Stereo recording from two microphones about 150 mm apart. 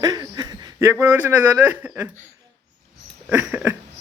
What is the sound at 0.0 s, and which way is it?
Speech, 25° right (ahead or behind).